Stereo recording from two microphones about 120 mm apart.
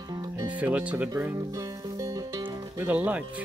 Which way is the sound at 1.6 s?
30° right (ahead or behind).